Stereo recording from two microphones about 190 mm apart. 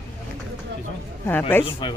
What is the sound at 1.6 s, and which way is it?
Speech, 25° left (ahead or behind).